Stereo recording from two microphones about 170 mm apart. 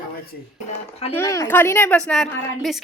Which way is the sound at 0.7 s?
35° left (ahead or behind).